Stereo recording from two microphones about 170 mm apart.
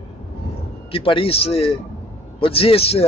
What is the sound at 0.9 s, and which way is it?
Speech, 30° left (ahead or behind).